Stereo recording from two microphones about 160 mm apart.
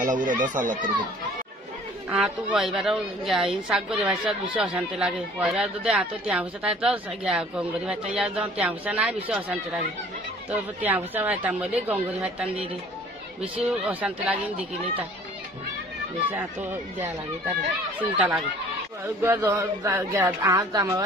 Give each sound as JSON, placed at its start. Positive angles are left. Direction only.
{"t": 0.0, "sound": "speech", "side_deg": -50}
{"t": 2.0, "sound": "a woman's voice", "side_deg": -10}
{"t": 18.1, "sound": "speech", "side_deg": -10}